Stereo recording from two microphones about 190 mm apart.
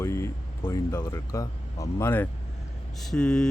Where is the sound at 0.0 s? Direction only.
15° left (ahead or behind).